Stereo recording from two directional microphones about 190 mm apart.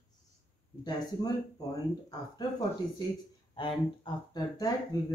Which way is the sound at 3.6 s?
25° left (ahead or behind).